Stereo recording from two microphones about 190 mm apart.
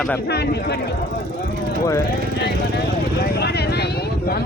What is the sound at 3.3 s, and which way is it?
Vehicle, 60° left (ahead or behind).